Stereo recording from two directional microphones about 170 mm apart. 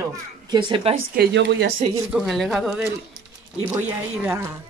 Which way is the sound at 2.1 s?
Centre (ahead or behind).